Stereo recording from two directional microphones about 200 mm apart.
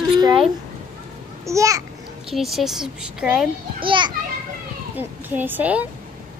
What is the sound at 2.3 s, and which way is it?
A woman's voice, centre (ahead or behind).